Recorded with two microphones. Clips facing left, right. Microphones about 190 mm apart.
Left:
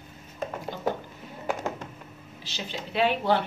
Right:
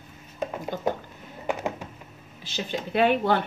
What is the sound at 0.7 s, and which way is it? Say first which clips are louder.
Speech: right 3 dB; 50° right (ahead or behind).